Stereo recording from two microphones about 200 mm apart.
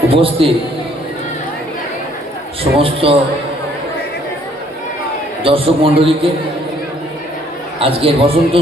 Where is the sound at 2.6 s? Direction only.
25° right (ahead or behind).